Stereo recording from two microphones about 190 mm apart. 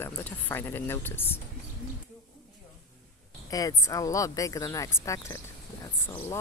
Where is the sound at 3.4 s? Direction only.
20° left (ahead or behind).